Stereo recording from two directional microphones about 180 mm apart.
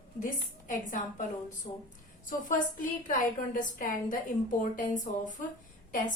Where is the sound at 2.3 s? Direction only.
50° left (ahead or behind).